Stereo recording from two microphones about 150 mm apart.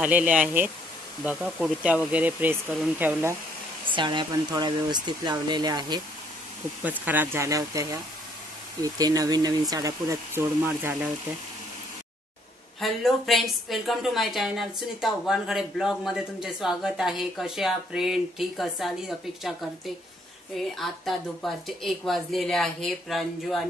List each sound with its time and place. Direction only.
0.0 s speech: 10° right (ahead or behind)
3.8 s speech: 30° right (ahead or behind)
6.8 s speech: 10° right (ahead or behind)
12.8 s a woman's voice: centre (ahead or behind)
20.5 s a woman's voice: centre (ahead or behind)